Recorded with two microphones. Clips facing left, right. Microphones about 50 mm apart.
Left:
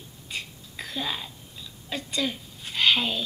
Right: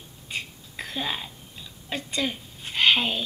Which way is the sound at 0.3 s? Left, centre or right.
Centre.